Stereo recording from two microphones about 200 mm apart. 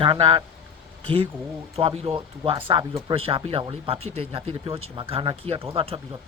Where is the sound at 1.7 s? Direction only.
30° right (ahead or behind).